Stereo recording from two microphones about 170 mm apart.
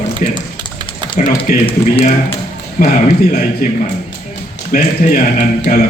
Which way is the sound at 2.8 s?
50° left (ahead or behind).